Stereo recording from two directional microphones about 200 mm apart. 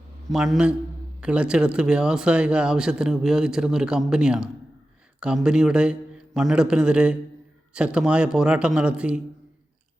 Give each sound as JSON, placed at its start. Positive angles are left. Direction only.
{"t": 0.3, "sound": "speech", "side_deg": 0}